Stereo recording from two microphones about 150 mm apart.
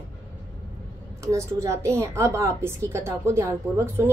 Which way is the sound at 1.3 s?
20° right (ahead or behind).